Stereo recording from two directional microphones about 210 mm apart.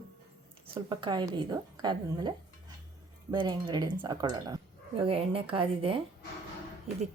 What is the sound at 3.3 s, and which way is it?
Speech, 20° right (ahead or behind).